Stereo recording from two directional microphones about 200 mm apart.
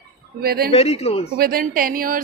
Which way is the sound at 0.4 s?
50° right (ahead or behind).